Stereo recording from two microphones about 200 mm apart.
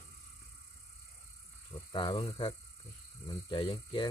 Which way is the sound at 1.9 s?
25° left (ahead or behind).